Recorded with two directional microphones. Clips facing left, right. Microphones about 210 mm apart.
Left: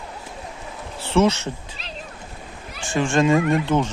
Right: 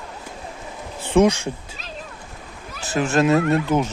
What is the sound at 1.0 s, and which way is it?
Speech, 15° right (ahead or behind).